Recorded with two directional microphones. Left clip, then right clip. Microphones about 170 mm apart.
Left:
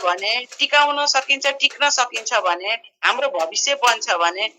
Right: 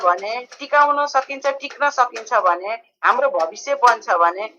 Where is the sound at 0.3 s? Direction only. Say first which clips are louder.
Even; 30° left (ahead or behind).